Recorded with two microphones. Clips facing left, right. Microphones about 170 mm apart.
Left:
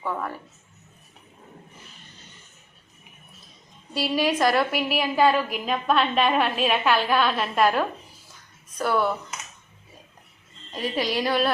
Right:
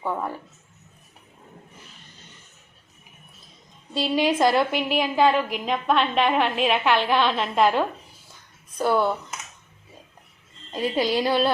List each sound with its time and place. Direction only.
0.0 s a woman's voice: 20° right (ahead or behind)
3.9 s a woman's voice: 25° right (ahead or behind)
10.7 s a woman's voice: 25° right (ahead or behind)